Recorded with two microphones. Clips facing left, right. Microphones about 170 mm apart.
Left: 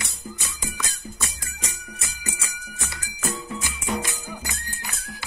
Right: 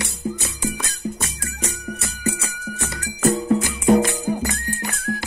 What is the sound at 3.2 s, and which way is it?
Music, 55° right (ahead or behind).